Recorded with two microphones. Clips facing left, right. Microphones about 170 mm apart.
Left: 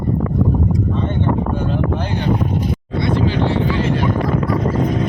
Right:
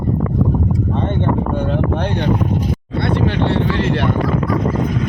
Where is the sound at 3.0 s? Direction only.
65° right (ahead or behind).